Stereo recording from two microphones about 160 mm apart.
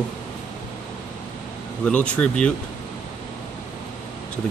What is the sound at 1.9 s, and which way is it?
Speech, 10° left (ahead or behind).